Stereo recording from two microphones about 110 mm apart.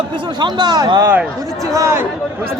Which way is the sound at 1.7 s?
25° right (ahead or behind).